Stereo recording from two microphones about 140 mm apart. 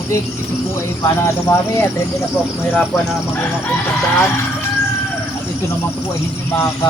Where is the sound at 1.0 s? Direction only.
15° left (ahead or behind).